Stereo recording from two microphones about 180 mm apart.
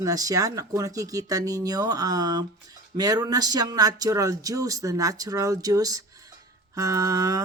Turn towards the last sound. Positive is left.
turn(degrees=-20)  # may be behind; listen again after turning